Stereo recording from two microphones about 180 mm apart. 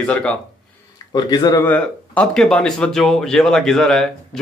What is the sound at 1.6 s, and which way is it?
Speech, 10° left (ahead or behind).